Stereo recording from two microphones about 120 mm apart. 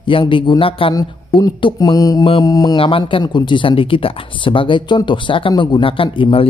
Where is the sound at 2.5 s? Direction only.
30° left (ahead or behind).